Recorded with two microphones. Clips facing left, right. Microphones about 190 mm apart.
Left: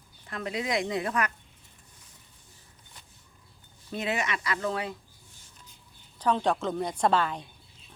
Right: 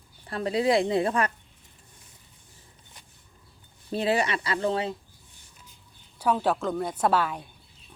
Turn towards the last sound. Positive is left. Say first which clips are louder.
# right 1 dB
turn(degrees=-10)  # may be behind; listen again after turning